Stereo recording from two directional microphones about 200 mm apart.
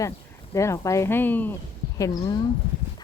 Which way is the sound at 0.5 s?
15° left (ahead or behind).